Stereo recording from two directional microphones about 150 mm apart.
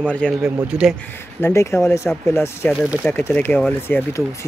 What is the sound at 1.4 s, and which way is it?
Speech, 20° left (ahead or behind).